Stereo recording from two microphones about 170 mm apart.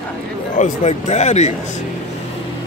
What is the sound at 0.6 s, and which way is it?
Speech, 45° left (ahead or behind).